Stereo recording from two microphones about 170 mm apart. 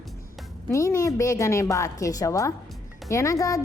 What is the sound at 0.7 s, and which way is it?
A woman's voice, 15° left (ahead or behind).